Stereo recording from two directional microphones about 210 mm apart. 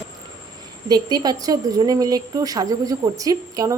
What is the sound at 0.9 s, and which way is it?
A woman's voice, 20° right (ahead or behind).